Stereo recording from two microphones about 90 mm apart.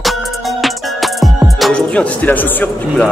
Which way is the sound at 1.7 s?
15° left (ahead or behind).